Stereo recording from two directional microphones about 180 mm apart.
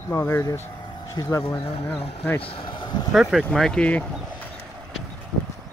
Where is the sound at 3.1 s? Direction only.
Centre (ahead or behind).